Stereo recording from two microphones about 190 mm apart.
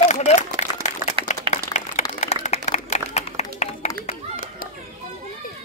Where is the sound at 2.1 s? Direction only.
35° left (ahead or behind).